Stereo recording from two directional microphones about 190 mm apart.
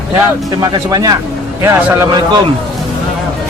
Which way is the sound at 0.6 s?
20° right (ahead or behind).